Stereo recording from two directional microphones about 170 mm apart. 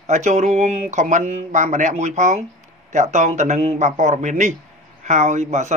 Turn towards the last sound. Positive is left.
turn(degrees=-45)  # may be behind; listen again after turning